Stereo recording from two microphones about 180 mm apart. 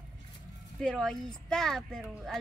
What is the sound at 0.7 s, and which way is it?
Speech, 5° left (ahead or behind).